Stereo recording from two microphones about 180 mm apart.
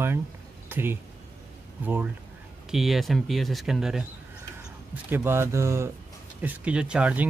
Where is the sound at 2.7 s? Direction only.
Centre (ahead or behind).